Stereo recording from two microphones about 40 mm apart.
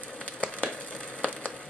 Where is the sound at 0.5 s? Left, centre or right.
Left.